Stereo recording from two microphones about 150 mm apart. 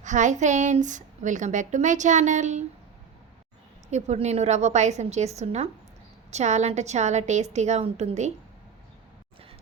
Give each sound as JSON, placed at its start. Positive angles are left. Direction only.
{"t": 0.0, "sound": "a woman's voice", "side_deg": -55}
{"t": 3.9, "sound": "a woman's voice", "side_deg": -50}